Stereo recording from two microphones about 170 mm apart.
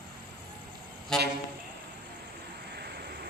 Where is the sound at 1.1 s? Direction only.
5° left (ahead or behind).